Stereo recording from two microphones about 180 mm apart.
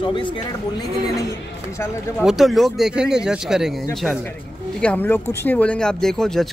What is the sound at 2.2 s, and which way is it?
Speech, centre (ahead or behind).